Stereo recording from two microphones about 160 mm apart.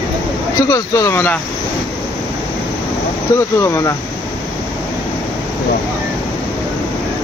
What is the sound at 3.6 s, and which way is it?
Speech, 20° left (ahead or behind).